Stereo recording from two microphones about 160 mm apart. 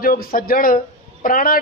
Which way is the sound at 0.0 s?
65° left (ahead or behind).